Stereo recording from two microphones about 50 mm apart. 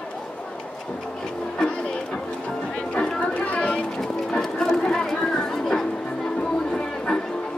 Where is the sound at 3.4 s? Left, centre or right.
Left.